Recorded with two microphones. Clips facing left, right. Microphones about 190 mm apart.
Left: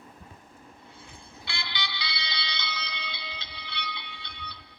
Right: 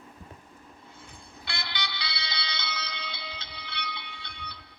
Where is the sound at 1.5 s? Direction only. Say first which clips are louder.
Right 1 dB; 45° right (ahead or behind).